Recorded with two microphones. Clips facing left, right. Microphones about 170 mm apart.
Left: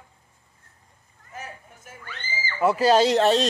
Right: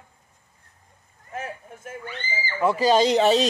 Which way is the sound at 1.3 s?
55° right (ahead or behind).